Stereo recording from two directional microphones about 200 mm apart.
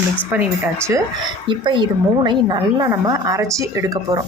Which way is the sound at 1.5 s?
25° right (ahead or behind).